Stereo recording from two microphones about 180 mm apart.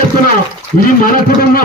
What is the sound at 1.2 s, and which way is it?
Speech, 55° left (ahead or behind).